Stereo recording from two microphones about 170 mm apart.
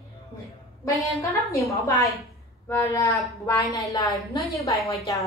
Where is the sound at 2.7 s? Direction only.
20° left (ahead or behind).